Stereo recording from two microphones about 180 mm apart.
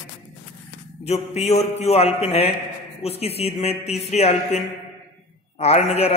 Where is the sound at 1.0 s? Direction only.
35° left (ahead or behind).